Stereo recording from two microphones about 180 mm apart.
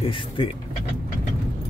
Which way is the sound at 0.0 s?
30° left (ahead or behind).